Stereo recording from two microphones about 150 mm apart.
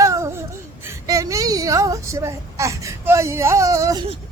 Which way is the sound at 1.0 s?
20° right (ahead or behind).